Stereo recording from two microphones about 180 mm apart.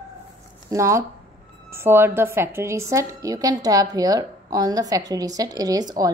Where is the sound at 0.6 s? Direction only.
15° right (ahead or behind).